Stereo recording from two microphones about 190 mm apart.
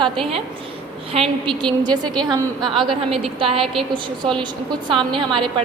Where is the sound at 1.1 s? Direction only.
30° right (ahead or behind).